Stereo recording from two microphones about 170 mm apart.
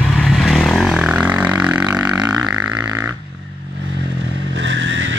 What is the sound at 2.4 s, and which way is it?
Music, 5° right (ahead or behind).